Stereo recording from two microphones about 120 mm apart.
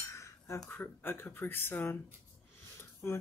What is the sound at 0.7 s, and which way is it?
Speech, 15° left (ahead or behind).